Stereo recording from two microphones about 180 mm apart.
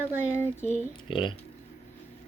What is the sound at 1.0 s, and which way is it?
Speech, 30° left (ahead or behind).